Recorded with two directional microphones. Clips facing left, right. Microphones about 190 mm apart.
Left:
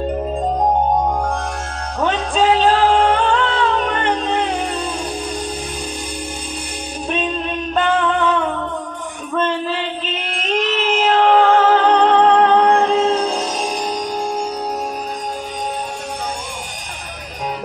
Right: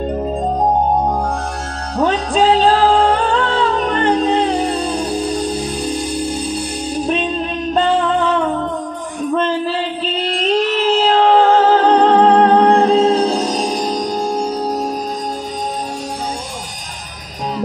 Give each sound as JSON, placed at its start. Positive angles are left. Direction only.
{"t": 2.0, "sound": "music", "side_deg": -35}
{"t": 7.7, "sound": "music", "side_deg": -35}
{"t": 9.7, "sound": "music", "side_deg": -35}